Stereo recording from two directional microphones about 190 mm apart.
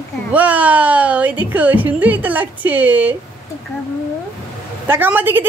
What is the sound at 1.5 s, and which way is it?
Speech, 10° right (ahead or behind).